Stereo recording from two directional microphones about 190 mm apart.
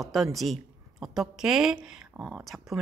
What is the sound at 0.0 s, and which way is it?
A woman's voice, centre (ahead or behind).